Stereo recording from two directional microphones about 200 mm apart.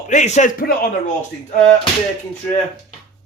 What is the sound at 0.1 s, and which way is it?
Speech, 35° left (ahead or behind).